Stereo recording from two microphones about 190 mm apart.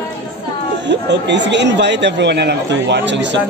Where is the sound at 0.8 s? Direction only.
65° right (ahead or behind).